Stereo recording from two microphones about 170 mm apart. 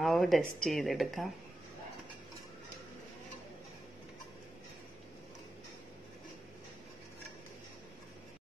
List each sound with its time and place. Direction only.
0.0 s speech: centre (ahead or behind)